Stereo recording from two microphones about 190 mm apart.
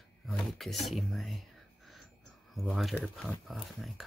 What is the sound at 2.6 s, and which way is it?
Speech, centre (ahead or behind).